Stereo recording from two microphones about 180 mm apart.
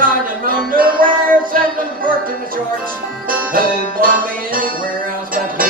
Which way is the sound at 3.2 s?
50° right (ahead or behind).